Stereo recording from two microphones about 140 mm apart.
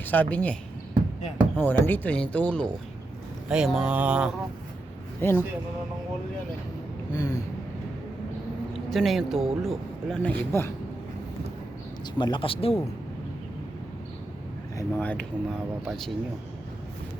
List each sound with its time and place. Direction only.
0.0 s speech: 15° left (ahead or behind)
1.5 s speech: 15° left (ahead or behind)
3.5 s speech: 5° right (ahead or behind)
5.2 s speech: 15° left (ahead or behind)
7.1 s a sound: 25° left (ahead or behind)
8.7 s speech: centre (ahead or behind)
10.2 s speech: 15° left (ahead or behind)
12.1 s speech: 35° left (ahead or behind)
14.8 s speech: 10° left (ahead or behind)